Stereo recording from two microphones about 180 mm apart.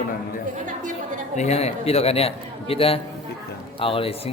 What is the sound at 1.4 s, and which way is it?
A man's voice, 40° left (ahead or behind).